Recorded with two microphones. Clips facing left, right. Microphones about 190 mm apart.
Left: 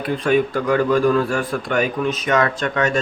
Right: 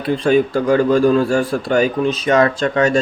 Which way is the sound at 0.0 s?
30° right (ahead or behind).